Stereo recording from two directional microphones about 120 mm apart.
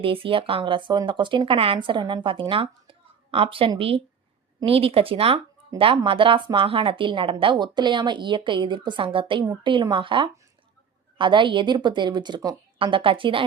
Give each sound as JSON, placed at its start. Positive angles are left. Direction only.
{"t": 0.0, "sound": "a woman's voice", "side_deg": -50}
{"t": 12.8, "sound": "a woman's voice", "side_deg": -45}